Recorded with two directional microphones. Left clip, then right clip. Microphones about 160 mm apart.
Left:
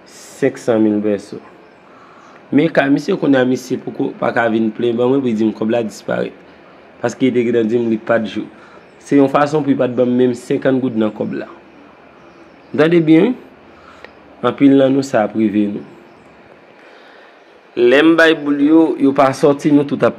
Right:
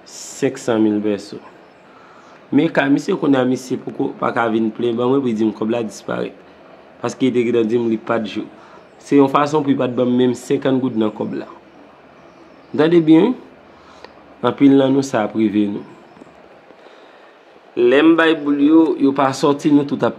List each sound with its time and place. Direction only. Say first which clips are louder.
0.4 s speech: left 3 dB; 5° right (ahead or behind)
2.5 s speech: left 2 dB; 5° right (ahead or behind)
12.7 s speech: left 1 dB; 5° right (ahead or behind)
17.7 s speech: left 2 dB; centre (ahead or behind)
19.7 s speech: left 3 dB; 10° right (ahead or behind)